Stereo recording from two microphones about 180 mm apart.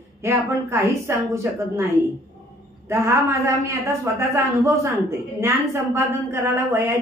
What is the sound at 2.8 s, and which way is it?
A man's voice, 15° right (ahead or behind).